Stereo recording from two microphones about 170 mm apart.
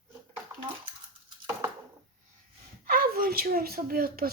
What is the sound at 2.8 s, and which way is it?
Speech, 60° right (ahead or behind).